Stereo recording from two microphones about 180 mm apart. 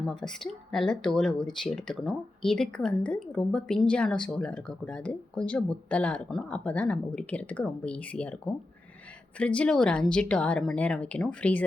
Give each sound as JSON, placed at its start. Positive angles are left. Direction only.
{"t": 0.0, "sound": "speech", "side_deg": 0}